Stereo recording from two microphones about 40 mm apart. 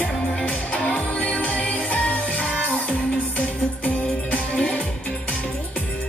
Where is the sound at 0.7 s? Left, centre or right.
Left.